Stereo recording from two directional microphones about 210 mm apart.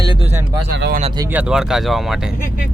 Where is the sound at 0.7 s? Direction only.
55° right (ahead or behind).